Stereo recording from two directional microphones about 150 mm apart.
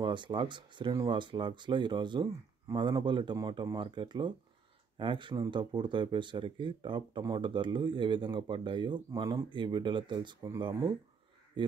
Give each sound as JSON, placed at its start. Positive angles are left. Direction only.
{"t": 0.0, "sound": "speech", "side_deg": -30}